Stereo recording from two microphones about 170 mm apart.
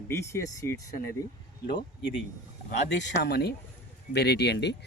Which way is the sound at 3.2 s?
70° left (ahead or behind).